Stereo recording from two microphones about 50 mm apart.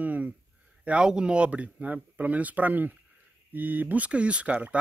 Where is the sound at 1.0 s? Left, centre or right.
Centre.